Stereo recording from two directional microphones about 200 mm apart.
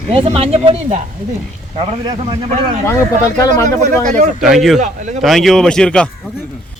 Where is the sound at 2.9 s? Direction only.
15° left (ahead or behind).